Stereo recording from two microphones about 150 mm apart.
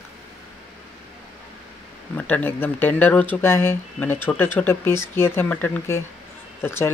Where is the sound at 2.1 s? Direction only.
10° left (ahead or behind).